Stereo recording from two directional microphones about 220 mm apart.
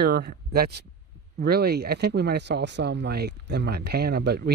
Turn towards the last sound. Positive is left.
turn(degrees=-45)  # may be behind; listen again after turning